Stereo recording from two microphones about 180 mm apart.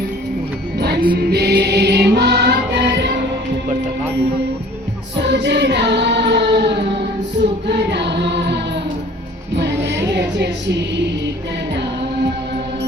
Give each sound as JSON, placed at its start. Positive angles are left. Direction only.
{"t": 0.8, "sound": "music", "side_deg": -65}
{"t": 5.1, "sound": "music", "side_deg": -75}
{"t": 9.8, "sound": "music", "side_deg": -70}